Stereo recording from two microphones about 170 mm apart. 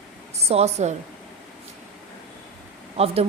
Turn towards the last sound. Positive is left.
turn(degrees=-35)  # may be behind; listen again after turning